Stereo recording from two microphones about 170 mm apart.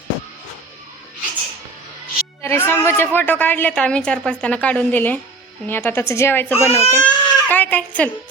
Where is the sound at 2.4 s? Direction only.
15° left (ahead or behind).